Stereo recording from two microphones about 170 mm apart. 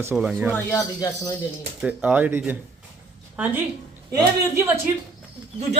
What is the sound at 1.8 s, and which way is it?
Speech, 10° right (ahead or behind).